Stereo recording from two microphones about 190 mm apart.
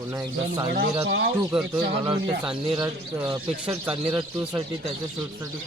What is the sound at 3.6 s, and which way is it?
Speech, 5° right (ahead or behind).